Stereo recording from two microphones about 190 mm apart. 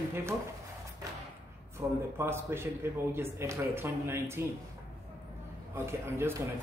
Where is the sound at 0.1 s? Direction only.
15° right (ahead or behind).